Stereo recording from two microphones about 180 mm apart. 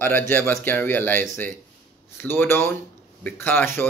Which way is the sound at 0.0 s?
10° left (ahead or behind).